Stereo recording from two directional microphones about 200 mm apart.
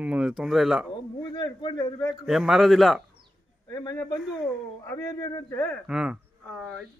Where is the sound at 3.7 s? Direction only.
15° left (ahead or behind).